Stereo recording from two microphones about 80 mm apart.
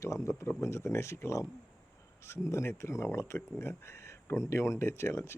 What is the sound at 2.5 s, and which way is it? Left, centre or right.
Speech, left.